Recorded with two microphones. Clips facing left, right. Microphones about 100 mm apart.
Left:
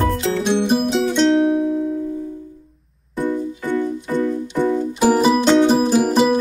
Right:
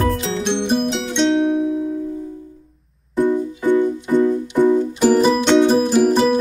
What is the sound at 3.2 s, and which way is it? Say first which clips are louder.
Music: right 4 dB; 15° right (ahead or behind).